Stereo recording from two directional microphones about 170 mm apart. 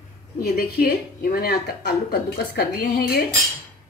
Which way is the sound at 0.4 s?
65° left (ahead or behind).